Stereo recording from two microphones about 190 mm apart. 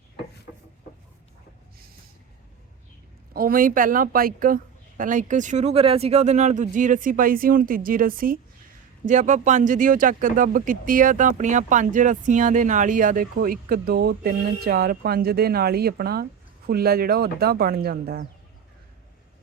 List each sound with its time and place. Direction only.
3.3 s speech: 50° right (ahead or behind)